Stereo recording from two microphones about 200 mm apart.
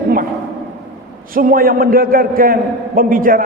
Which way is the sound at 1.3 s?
45° right (ahead or behind).